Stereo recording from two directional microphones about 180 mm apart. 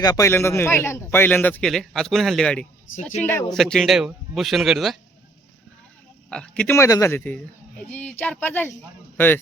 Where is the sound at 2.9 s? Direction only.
90° left.